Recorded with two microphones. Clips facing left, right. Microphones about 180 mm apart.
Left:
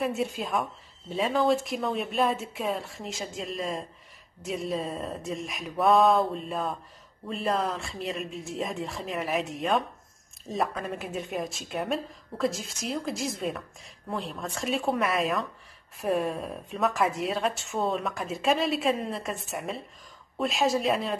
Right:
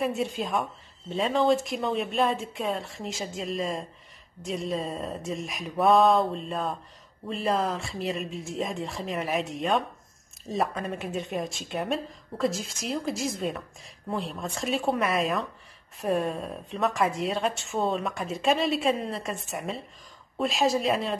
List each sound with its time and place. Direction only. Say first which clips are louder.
0.0 s a woman's voice: right 1 dB; centre (ahead or behind)